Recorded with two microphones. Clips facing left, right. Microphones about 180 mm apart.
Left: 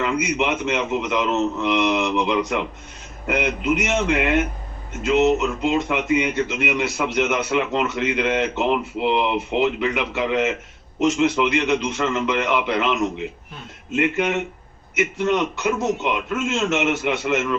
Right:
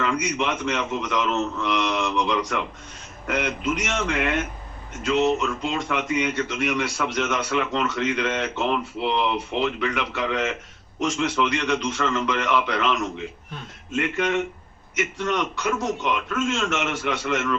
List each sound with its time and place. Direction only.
0.0 s speech: 20° left (ahead or behind)